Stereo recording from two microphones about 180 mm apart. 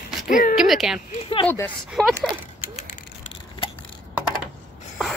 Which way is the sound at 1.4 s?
10° left (ahead or behind).